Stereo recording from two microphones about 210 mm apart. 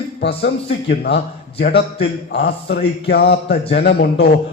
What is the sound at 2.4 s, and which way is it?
A man's voice, 50° left (ahead or behind).